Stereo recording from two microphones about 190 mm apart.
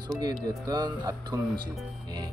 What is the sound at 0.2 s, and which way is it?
Speech, 20° right (ahead or behind).